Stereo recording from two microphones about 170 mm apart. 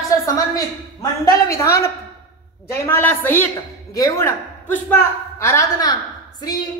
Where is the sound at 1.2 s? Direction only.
15° left (ahead or behind).